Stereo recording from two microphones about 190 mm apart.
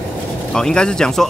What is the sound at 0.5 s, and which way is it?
Speech, 5° left (ahead or behind).